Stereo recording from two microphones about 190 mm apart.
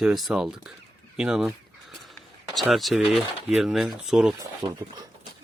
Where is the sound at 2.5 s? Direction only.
Centre (ahead or behind).